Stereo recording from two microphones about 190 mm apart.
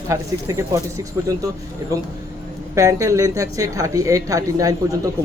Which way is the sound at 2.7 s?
15° right (ahead or behind).